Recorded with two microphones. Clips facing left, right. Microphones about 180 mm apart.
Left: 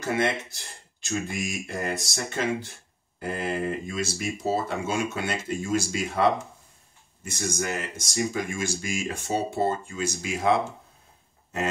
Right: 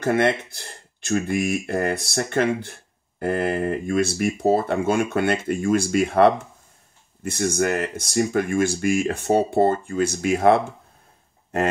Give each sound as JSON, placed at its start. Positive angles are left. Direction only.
{"t": 0.0, "sound": "speech", "side_deg": -60}